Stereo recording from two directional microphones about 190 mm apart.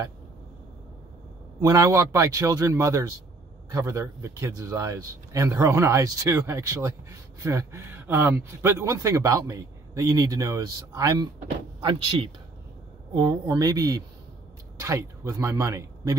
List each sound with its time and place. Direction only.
1.6 s a man's voice: 15° right (ahead or behind)